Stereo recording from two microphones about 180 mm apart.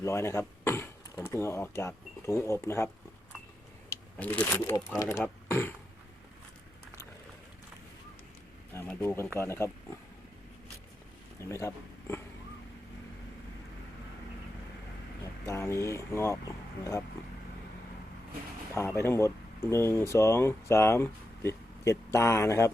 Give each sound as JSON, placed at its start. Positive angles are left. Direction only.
{"t": 0.0, "sound": "speech", "side_deg": 15}
{"t": 8.7, "sound": "speech", "side_deg": 10}
{"t": 11.3, "sound": "speech", "side_deg": 15}
{"t": 15.4, "sound": "speech", "side_deg": 15}
{"t": 18.7, "sound": "speech", "side_deg": 15}